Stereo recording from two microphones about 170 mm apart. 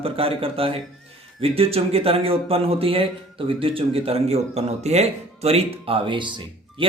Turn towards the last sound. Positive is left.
turn(degrees=-30)  # may be behind; listen again after turning